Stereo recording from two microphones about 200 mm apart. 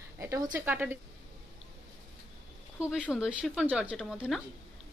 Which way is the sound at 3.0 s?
5° right (ahead or behind).